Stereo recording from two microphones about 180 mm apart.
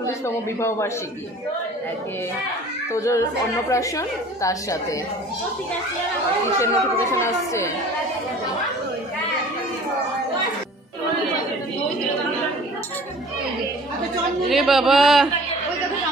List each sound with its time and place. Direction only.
0.6 s a woman's voice: 15° left (ahead or behind)
2.9 s a woman's voice: 15° left (ahead or behind)
6.6 s a woman's voice: 15° left (ahead or behind)
14.5 s a man's voice: centre (ahead or behind)